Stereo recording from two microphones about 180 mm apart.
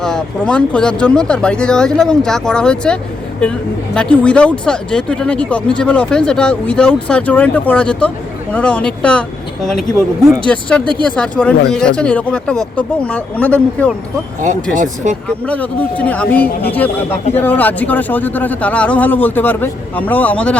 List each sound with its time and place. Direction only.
0.0 s speech: 5° left (ahead or behind)
10.2 s speech: 5° left (ahead or behind)
15.4 s speech: 10° left (ahead or behind)